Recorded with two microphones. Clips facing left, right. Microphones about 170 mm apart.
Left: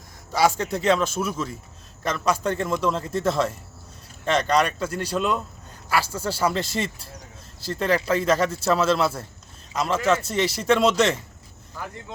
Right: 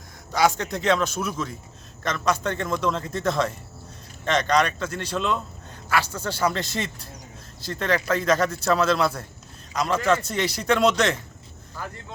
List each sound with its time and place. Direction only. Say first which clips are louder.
0.3 s a man's voice: left 1 dB; 5° left (ahead or behind)